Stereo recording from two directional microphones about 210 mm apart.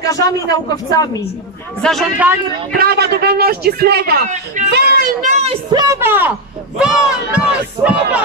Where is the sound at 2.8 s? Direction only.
50° right (ahead or behind).